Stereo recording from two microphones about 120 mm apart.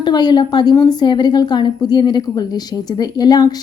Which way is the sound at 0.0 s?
35° left (ahead or behind).